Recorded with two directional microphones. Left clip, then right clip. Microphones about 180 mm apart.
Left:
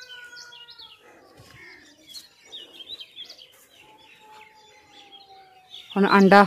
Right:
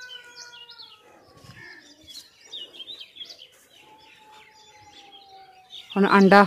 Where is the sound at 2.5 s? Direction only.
10° right (ahead or behind).